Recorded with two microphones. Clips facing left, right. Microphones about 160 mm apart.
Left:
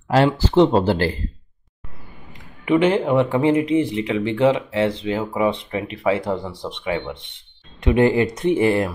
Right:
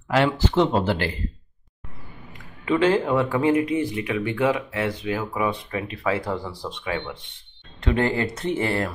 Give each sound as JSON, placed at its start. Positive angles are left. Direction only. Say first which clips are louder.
{"t": 0.1, "sound": "speech", "louder": "left 4 dB", "side_deg": 35}
{"t": 2.3, "sound": "speech", "louder": "left 5 dB", "side_deg": 20}